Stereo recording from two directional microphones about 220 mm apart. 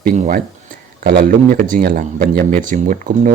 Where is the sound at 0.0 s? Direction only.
40° right (ahead or behind).